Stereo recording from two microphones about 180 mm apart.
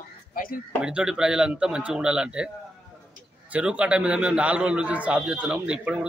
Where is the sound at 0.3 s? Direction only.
55° left (ahead or behind).